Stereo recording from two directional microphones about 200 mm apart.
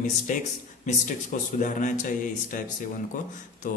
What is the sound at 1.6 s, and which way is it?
A man's voice, 40° left (ahead or behind).